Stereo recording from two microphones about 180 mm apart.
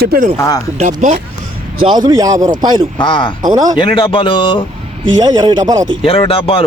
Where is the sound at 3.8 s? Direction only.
30° left (ahead or behind).